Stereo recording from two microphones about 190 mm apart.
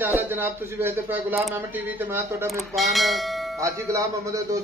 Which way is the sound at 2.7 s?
Centre (ahead or behind).